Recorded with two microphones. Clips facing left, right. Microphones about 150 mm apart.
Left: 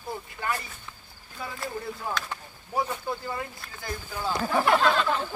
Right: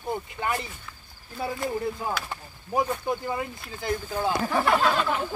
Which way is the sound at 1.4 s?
30° right (ahead or behind).